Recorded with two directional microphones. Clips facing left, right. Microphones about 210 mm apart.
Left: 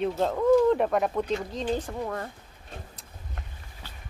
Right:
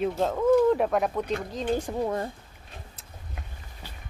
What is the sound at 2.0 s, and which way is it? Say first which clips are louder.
Speech: right 4 dB; 25° right (ahead or behind).